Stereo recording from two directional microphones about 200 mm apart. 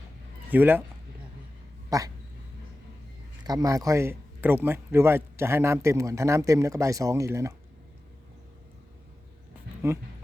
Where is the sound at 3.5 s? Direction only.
15° right (ahead or behind).